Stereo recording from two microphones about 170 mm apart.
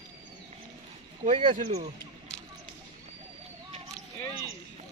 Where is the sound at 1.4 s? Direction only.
30° right (ahead or behind).